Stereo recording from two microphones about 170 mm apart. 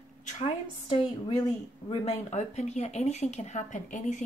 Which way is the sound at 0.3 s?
40° left (ahead or behind).